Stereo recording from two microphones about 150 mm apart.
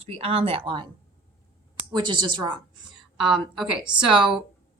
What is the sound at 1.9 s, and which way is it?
Speech, 30° right (ahead or behind).